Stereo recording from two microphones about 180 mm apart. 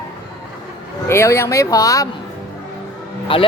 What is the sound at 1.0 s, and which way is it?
Speech, 15° left (ahead or behind).